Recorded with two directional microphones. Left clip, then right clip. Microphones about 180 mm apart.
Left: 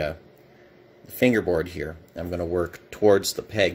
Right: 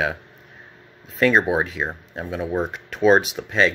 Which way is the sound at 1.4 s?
20° left (ahead or behind).